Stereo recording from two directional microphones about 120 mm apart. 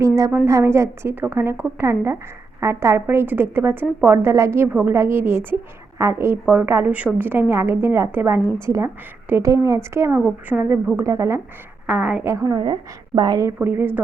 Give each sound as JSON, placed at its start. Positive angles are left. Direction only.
{"t": 0.3, "sound": "a woman's voice", "side_deg": -20}
{"t": 11.9, "sound": "a woman's voice", "side_deg": -15}
{"t": 13.6, "sound": "a woman's voice", "side_deg": -15}